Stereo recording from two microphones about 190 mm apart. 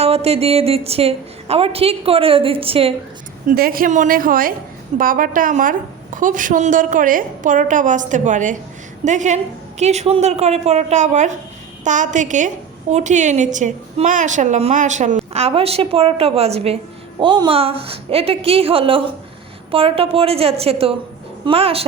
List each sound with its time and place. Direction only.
0.0 s a woman's voice: 30° right (ahead or behind)
3.4 s a woman's voice: 50° right (ahead or behind); by 21.8 s 30° right (ahead or behind)